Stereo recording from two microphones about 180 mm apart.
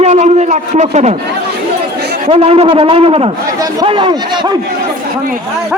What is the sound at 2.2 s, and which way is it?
A man's voice, 30° right (ahead or behind).